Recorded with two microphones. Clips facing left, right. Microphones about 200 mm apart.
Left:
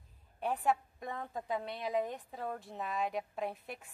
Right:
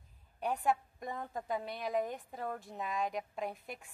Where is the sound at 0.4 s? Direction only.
Centre (ahead or behind).